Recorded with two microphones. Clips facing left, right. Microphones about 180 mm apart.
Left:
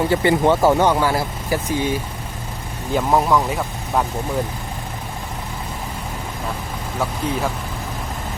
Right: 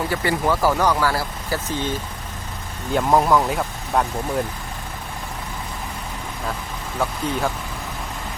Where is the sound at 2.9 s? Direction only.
Centre (ahead or behind).